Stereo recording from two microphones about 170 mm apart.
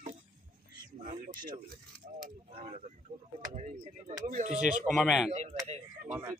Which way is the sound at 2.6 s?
40° right (ahead or behind).